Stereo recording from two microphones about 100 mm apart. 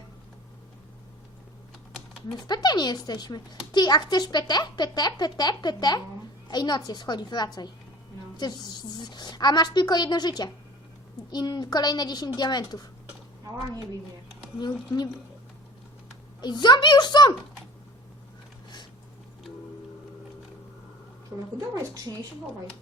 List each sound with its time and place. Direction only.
2.5 s a child's voice: 45° left (ahead or behind)
14.6 s a child's voice: 45° left (ahead or behind)
16.4 s a child's voice: 45° left (ahead or behind)
21.3 s a sound: 15° right (ahead or behind)
21.8 s a woman's voice: 35° right (ahead or behind)